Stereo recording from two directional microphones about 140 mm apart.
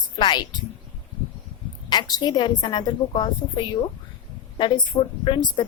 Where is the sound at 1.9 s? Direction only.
30° left (ahead or behind).